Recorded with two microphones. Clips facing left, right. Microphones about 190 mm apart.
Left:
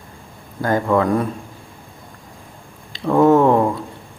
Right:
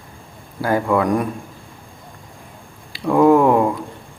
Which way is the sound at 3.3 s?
10° right (ahead or behind).